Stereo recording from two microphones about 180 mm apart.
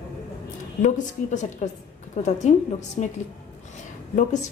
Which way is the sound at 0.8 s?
45° left (ahead or behind).